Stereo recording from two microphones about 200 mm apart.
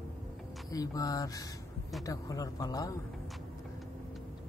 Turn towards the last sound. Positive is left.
turn(degrees=20)  # may be behind; listen again after turning